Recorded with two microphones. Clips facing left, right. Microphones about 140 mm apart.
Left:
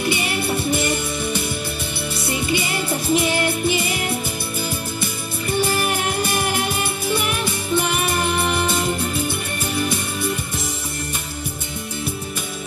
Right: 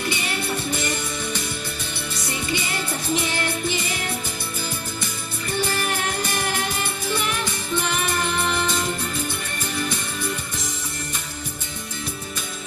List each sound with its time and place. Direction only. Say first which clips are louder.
0.0 s music: left 5 dB; 10° left (ahead or behind)